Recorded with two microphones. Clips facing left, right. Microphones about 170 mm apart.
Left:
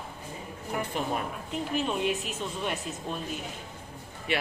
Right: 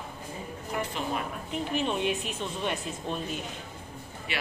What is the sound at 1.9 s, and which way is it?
Speech, 5° left (ahead or behind).